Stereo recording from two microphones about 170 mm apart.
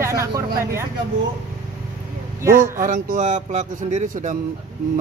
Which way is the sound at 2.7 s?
50° right (ahead or behind).